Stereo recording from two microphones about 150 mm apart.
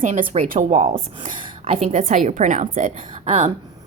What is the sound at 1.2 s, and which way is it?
A woman's voice, 40° right (ahead or behind).